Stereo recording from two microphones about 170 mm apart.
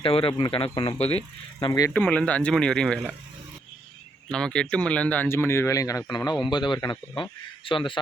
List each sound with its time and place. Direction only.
0.0 s speech: 30° left (ahead or behind)
0.9 s speech: 40° left (ahead or behind)
1.5 s speech: 20° left (ahead or behind)
1.9 s speech: 10° left (ahead or behind)
4.3 s speech: 5° left (ahead or behind); by 7.9 s 30° left (ahead or behind)